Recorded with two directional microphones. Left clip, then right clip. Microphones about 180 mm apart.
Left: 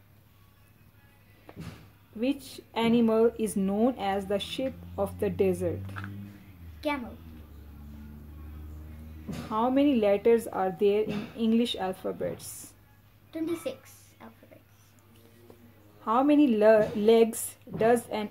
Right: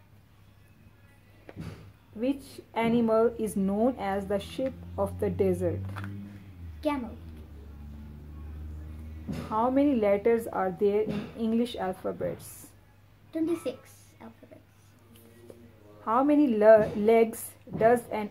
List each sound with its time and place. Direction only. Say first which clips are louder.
2.1 s speech: even; 25° left (ahead or behind)
6.8 s a woman's voice: right 1 dB; centre (ahead or behind)
9.5 s speech: even; 20° left (ahead or behind)
13.3 s a woman's voice: right 2 dB; centre (ahead or behind)
16.0 s speech: left 1 dB; 20° left (ahead or behind)